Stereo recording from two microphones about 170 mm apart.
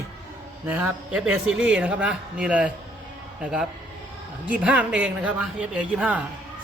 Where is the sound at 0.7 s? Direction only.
10° right (ahead or behind).